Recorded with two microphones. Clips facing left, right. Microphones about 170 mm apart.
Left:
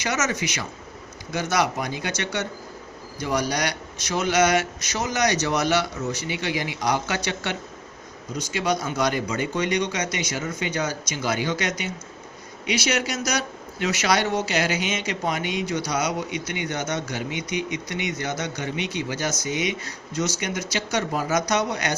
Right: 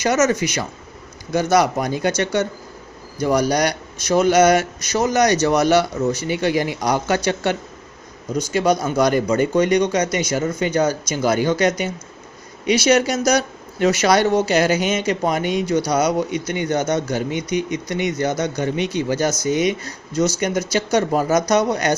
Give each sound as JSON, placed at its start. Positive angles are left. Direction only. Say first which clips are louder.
{"t": 0.0, "sound": "speech", "louder": "right 9 dB", "side_deg": -45}
{"t": 8.5, "sound": "speech", "louder": "right 7 dB", "side_deg": -45}